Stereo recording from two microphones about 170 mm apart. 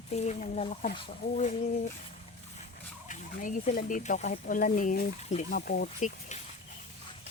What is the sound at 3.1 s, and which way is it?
Speech, 50° left (ahead or behind).